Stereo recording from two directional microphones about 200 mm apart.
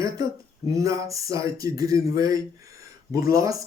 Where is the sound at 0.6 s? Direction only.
15° right (ahead or behind).